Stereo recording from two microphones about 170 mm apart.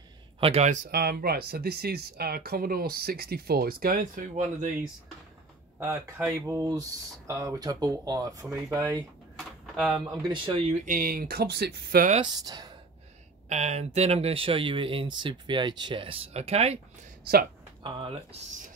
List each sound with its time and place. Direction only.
0.4 s speech: 40° right (ahead or behind)
0.9 s speech: 65° right (ahead or behind); by 4.6 s 50° right (ahead or behind)
5.8 s speech: 20° right (ahead or behind)
9.4 s door: centre (ahead or behind)
10.2 s speech: 30° right (ahead or behind)
10.7 s speech: 55° right (ahead or behind)
12.2 s speech: 25° right (ahead or behind)
13.5 s speech: 40° right (ahead or behind)
17.8 s speech: 35° right (ahead or behind)